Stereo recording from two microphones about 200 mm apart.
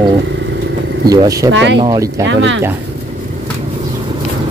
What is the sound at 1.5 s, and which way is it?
Speech, 60° right (ahead or behind).